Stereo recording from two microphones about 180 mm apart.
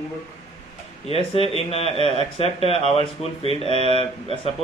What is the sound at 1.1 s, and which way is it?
A man's voice, 30° left (ahead or behind).